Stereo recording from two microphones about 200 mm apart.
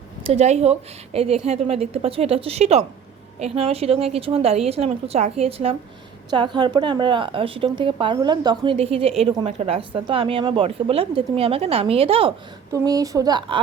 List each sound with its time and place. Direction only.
0.3 s a woman's voice: 35° right (ahead or behind)
12.7 s a woman's voice: 20° right (ahead or behind)